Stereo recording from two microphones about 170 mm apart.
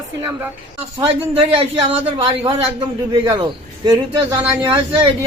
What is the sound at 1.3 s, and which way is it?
A man's voice, 35° right (ahead or behind).